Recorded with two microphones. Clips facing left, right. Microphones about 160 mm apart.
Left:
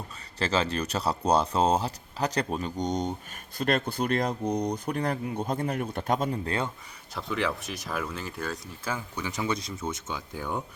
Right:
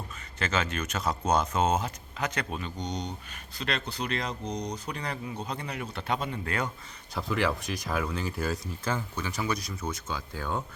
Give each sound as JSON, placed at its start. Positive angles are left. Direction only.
{"t": 0.3, "sound": "speech", "side_deg": 30}
{"t": 6.4, "sound": "speech", "side_deg": 30}
{"t": 7.1, "sound": "speech", "side_deg": 0}